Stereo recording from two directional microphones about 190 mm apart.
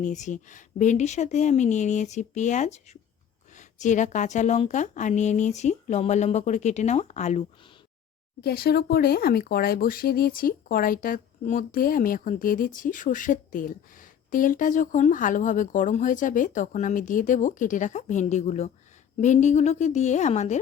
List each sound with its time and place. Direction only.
0.0 s a woman's voice: 40° left (ahead or behind)
8.4 s a woman's voice: 55° left (ahead or behind); by 20.6 s 35° left (ahead or behind)